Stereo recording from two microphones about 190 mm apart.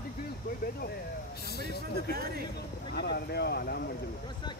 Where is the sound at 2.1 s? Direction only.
55° right (ahead or behind).